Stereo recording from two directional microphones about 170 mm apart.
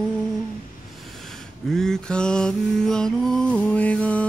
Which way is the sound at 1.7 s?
5° left (ahead or behind).